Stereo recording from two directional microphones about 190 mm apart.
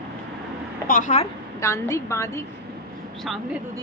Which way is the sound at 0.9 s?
40° left (ahead or behind).